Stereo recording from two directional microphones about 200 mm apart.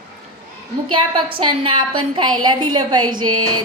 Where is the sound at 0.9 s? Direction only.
25° right (ahead or behind).